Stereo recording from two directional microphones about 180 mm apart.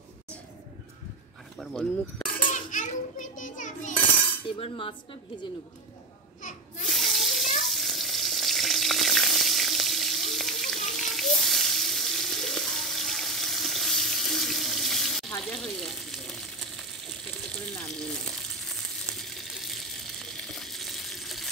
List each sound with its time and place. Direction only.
1.6 s speech: 5° left (ahead or behind)
2.5 s a child's voice: 45° left (ahead or behind)
4.6 s speech: 30° left (ahead or behind)
6.9 s water: centre (ahead or behind)
17.7 s frying: 5° left (ahead or behind)